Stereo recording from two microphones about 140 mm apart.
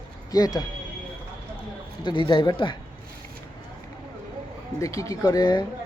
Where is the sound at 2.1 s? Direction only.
35° left (ahead or behind).